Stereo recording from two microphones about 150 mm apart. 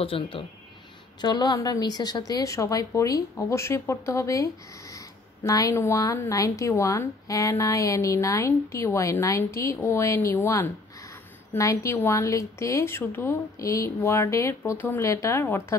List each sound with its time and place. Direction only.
0.0 s a woman's voice: 35° left (ahead or behind); by 15.6 s 20° left (ahead or behind)